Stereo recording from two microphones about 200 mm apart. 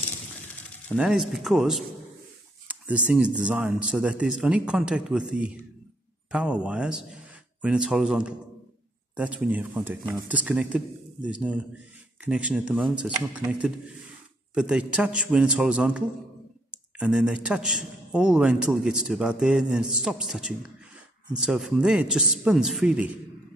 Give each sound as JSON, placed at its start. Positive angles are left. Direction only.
{"t": 0.9, "sound": "a man's voice", "side_deg": -5}
{"t": 17.0, "sound": "a man's voice", "side_deg": -5}